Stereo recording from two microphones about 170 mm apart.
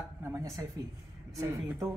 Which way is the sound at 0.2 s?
15° right (ahead or behind).